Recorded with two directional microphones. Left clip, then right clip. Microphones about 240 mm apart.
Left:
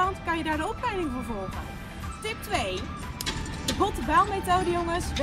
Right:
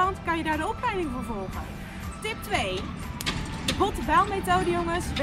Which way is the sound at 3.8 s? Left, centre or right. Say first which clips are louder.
Even; centre.